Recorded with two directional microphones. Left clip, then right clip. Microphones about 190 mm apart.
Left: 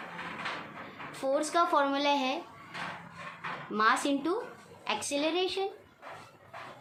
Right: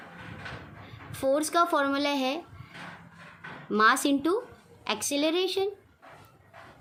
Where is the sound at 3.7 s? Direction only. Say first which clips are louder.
Right 5 dB; 50° right (ahead or behind).